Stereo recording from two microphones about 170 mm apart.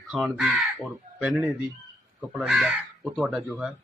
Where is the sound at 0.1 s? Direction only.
5° right (ahead or behind).